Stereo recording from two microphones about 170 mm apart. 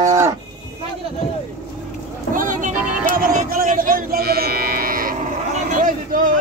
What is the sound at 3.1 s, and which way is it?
Cattle, 55° right (ahead or behind).